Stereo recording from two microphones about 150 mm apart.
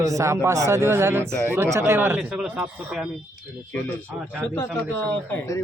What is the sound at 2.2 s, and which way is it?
Speech, 5° right (ahead or behind).